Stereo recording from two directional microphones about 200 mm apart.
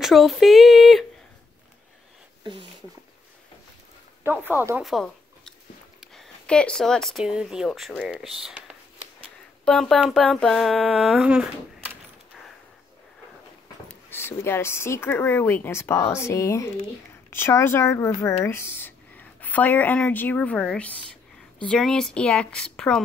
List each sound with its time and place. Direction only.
0.0 s speech: centre (ahead or behind)
2.4 s speech: 25° right (ahead or behind)
4.2 s speech: 10° right (ahead or behind)
9.7 s speech: centre (ahead or behind)
13.8 s speech: 10° left (ahead or behind)